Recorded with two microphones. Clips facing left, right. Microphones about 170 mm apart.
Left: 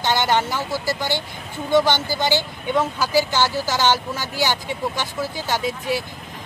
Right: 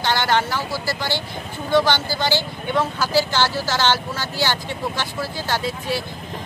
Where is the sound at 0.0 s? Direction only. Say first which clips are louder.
Even; 20° left (ahead or behind).